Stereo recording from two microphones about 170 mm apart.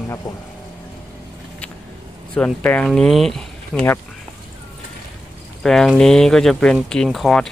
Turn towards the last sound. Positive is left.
turn(degrees=0)  # may be behind; listen again after turning